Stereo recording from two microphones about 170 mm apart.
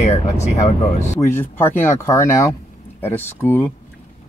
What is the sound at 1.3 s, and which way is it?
Speech, 10° left (ahead or behind).